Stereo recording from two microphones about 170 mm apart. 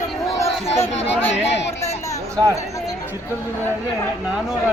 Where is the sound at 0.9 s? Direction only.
35° left (ahead or behind).